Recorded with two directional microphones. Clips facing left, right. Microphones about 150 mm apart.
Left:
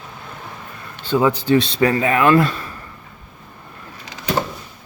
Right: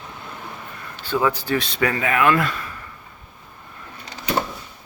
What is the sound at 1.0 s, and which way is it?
Speech, 20° left (ahead or behind).